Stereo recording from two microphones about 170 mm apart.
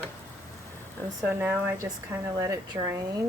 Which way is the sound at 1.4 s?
10° right (ahead or behind).